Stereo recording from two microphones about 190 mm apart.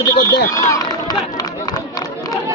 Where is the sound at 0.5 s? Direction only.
15° left (ahead or behind).